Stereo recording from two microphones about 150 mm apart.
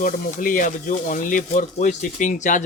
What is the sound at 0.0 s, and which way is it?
Speech, 65° left (ahead or behind).